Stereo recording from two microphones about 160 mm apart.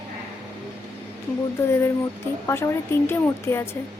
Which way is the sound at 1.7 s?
15° left (ahead or behind).